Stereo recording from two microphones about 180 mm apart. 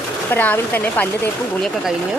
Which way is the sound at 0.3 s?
10° left (ahead or behind).